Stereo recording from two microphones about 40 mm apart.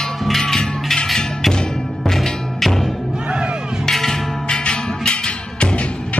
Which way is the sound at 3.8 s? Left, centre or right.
Centre.